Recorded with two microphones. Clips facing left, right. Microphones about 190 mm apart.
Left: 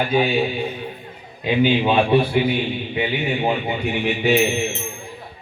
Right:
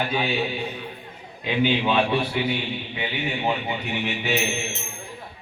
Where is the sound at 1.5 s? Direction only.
15° left (ahead or behind).